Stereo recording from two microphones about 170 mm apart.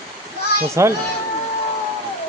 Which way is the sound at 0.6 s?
15° right (ahead or behind).